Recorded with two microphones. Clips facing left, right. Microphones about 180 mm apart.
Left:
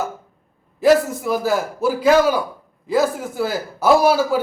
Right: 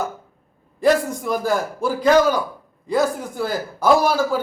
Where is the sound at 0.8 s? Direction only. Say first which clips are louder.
Left 3 dB; 5° left (ahead or behind).